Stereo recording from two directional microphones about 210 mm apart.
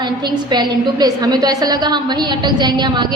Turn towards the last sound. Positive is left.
turn(degrees=-20)  # may be behind; listen again after turning